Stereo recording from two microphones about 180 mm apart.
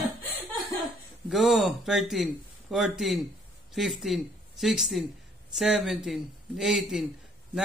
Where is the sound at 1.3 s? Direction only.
Centre (ahead or behind).